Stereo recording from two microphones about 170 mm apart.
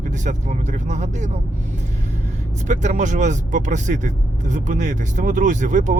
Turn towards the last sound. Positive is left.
turn(degrees=-45)  # may be behind; listen again after turning